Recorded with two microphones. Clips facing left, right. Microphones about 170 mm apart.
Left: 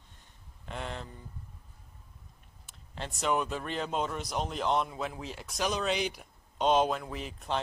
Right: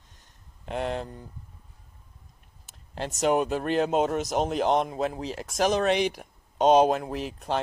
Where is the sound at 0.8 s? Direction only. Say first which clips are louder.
Right 10 dB; 50° right (ahead or behind).